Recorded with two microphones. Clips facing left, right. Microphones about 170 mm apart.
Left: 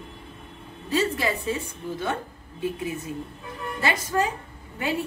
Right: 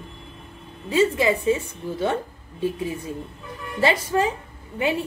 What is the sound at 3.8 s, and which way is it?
Speech, 25° right (ahead or behind).